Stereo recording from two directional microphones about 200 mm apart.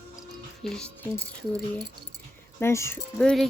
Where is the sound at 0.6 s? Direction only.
5° left (ahead or behind).